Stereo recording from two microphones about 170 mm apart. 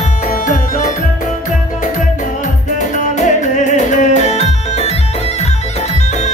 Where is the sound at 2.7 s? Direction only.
45° left (ahead or behind).